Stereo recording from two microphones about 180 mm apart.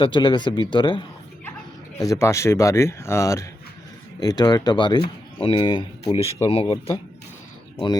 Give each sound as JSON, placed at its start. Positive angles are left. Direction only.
{"t": 0.0, "sound": "a man's voice", "side_deg": 25}